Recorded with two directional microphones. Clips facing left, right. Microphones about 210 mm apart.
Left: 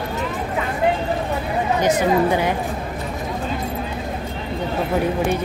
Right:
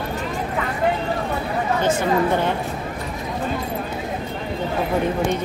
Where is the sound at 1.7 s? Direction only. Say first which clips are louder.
Left 2 dB; 15° left (ahead or behind).